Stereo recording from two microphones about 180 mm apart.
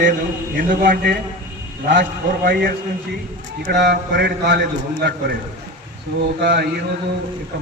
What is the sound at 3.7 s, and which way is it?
A man's voice, 65° right (ahead or behind).